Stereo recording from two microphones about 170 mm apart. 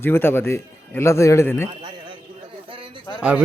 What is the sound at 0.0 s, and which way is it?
A man's voice, 15° left (ahead or behind).